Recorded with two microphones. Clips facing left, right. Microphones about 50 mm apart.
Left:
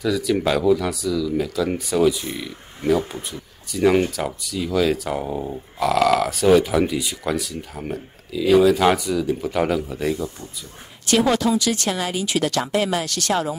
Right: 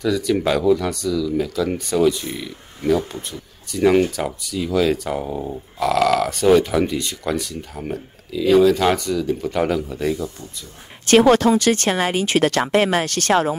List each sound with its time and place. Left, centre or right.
0.0 s speech: centre
11.1 s speech: right